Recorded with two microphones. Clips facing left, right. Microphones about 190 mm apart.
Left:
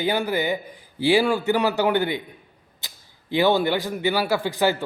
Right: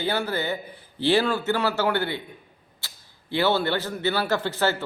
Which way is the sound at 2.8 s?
15° left (ahead or behind).